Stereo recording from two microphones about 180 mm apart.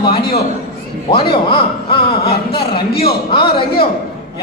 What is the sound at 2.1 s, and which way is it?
A man's voice, 60° left (ahead or behind).